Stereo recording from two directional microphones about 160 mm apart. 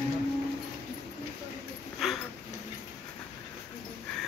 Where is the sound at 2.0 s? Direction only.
Centre (ahead or behind).